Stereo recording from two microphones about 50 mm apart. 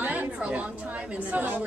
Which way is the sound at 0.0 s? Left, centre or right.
Right.